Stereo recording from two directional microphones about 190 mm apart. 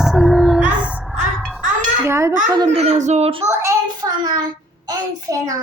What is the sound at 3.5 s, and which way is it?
Child singing, 15° right (ahead or behind).